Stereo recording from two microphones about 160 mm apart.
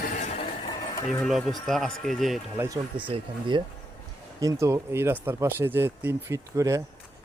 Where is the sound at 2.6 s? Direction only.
20° right (ahead or behind).